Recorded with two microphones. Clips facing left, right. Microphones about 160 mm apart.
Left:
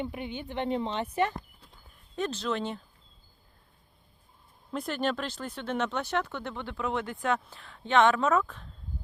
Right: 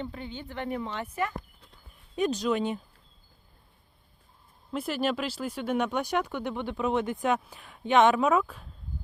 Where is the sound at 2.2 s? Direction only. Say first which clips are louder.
Right 4 dB; 15° right (ahead or behind).